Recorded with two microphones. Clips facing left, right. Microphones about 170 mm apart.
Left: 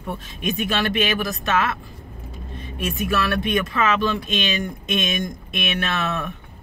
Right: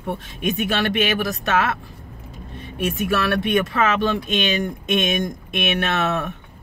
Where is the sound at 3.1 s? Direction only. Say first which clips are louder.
Right 1 dB; 60° right (ahead or behind).